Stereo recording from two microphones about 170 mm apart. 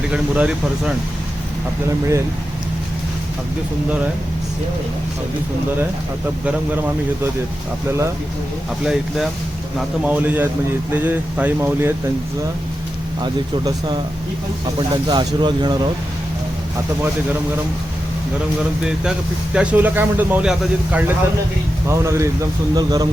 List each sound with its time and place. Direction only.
0.1 s speech: 5° right (ahead or behind)
7.9 s speech: 15° right (ahead or behind)
8.8 s speech: 5° right (ahead or behind)
13.2 s speech: 25° right (ahead or behind)
15.0 s speech: 25° right (ahead or behind)
19.5 s speech: 10° right (ahead or behind)
21.8 s speech: 15° right (ahead or behind)